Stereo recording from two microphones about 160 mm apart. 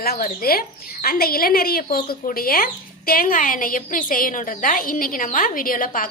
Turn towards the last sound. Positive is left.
turn(degrees=60)  # may be behind; listen again after turning